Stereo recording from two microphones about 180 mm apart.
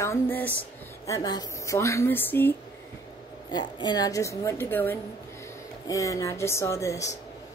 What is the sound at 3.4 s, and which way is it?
A woman's voice, 25° left (ahead or behind).